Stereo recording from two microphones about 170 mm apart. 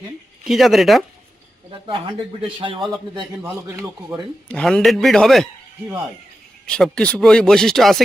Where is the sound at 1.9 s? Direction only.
30° right (ahead or behind).